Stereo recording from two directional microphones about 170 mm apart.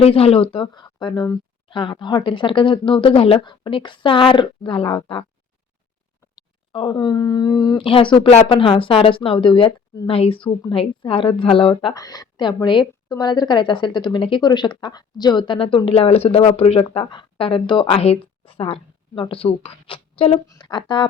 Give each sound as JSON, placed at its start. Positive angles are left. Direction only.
{"t": 0.0, "sound": "speech", "side_deg": 35}
{"t": 6.3, "sound": "speech", "side_deg": 25}